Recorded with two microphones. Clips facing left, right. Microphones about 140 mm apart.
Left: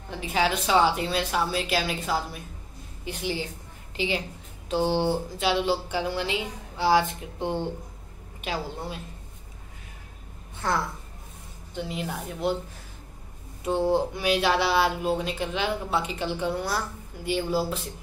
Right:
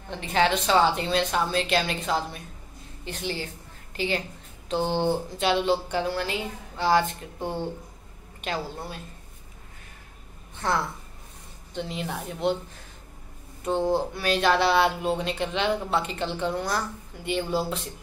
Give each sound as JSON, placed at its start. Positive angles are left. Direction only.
{"t": 0.1, "sound": "a woman's voice", "side_deg": 5}
{"t": 8.5, "sound": "speech", "side_deg": 20}
{"t": 11.7, "sound": "a woman's voice", "side_deg": 5}
{"t": 13.7, "sound": "speech", "side_deg": 15}